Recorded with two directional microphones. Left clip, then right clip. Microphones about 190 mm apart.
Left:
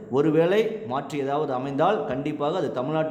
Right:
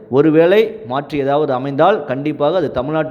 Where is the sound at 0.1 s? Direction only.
30° right (ahead or behind).